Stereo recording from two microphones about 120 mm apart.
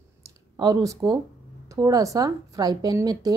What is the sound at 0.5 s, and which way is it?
A woman's voice, 35° right (ahead or behind).